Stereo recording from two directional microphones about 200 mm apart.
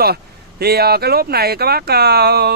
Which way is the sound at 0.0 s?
50° right (ahead or behind).